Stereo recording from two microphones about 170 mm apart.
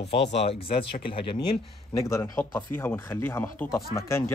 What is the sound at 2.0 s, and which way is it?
Speech, 15° left (ahead or behind).